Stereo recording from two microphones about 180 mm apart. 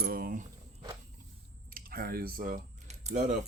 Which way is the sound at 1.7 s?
55° right (ahead or behind).